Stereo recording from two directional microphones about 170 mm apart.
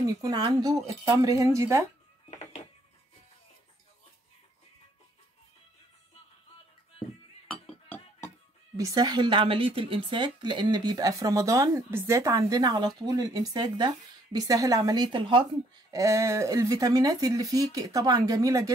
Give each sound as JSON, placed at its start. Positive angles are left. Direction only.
{"t": 0.0, "sound": "a woman's voice", "side_deg": -20}
{"t": 7.4, "sound": "chink", "side_deg": 10}
{"t": 8.7, "sound": "a woman's voice", "side_deg": -20}